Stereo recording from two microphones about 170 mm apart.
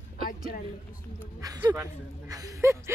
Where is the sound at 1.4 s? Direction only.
20° right (ahead or behind).